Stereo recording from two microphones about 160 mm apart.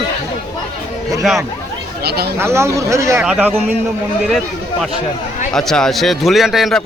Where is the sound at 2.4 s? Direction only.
15° right (ahead or behind).